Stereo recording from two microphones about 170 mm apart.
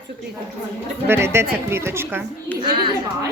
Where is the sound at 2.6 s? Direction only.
30° right (ahead or behind).